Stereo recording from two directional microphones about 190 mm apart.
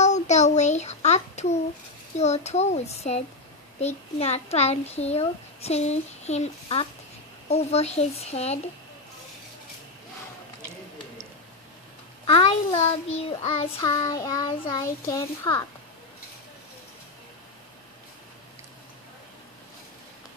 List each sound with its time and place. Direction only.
0.0 s a sound: 35° left (ahead or behind)
2.1 s a child's voice: 35° left (ahead or behind)
12.3 s a child's voice: 30° left (ahead or behind)
13.8 s a child's voice: 20° left (ahead or behind)